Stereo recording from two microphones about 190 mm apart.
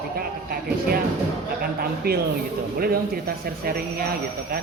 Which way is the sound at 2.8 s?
50° right (ahead or behind).